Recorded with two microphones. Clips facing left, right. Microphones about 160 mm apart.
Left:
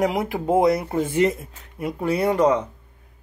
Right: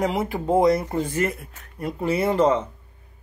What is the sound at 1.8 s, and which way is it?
Speech, centre (ahead or behind).